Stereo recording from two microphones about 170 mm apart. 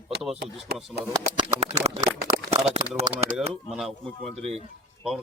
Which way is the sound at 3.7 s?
Centre (ahead or behind).